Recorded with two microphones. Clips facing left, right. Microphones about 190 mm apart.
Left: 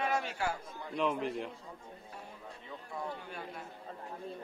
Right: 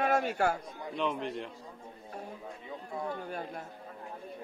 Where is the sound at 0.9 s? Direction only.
Centre (ahead or behind).